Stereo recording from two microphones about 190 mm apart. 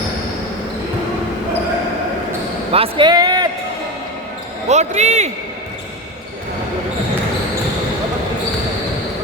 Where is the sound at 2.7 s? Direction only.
30° right (ahead or behind).